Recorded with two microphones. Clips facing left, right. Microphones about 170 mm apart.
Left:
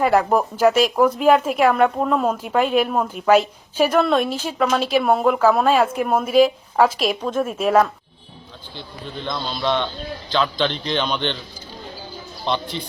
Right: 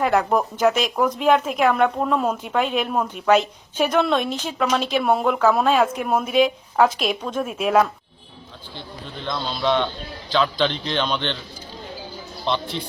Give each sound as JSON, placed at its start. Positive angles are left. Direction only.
{"t": 0.0, "sound": "a woman's voice", "side_deg": 5}
{"t": 9.2, "sound": "a woman's voice", "side_deg": 0}
{"t": 12.5, "sound": "a woman's voice", "side_deg": 5}